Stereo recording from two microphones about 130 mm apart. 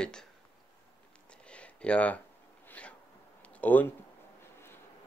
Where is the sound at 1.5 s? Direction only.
10° left (ahead or behind).